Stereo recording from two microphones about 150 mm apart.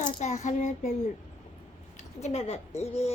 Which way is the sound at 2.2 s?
45° left (ahead or behind).